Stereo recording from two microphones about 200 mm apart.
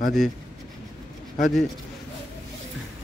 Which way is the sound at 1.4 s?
Centre (ahead or behind).